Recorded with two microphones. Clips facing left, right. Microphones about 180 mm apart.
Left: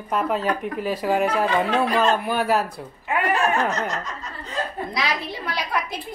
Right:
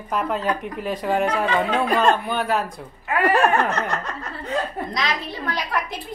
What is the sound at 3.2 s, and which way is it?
Speech, 60° right (ahead or behind).